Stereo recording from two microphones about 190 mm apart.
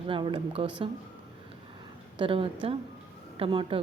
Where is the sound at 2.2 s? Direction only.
30° right (ahead or behind).